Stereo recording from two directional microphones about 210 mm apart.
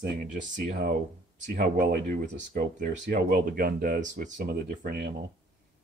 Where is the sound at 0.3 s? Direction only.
35° right (ahead or behind).